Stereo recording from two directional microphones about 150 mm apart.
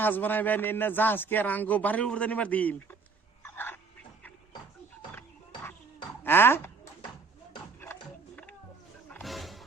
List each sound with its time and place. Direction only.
0.0 s a man's voice: 10° left (ahead or behind)
3.4 s dog: 15° left (ahead or behind)
6.2 s a man's voice: 15° left (ahead or behind)
9.0 s roaring cats: 5° left (ahead or behind)